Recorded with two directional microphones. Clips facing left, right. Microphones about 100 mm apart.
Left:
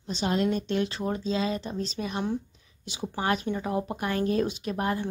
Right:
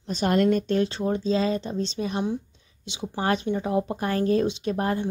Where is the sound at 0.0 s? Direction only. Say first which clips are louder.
Right 5 dB; 50° right (ahead or behind).